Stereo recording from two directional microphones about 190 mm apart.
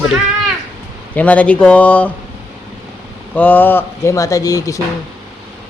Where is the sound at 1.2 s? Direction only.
5° left (ahead or behind).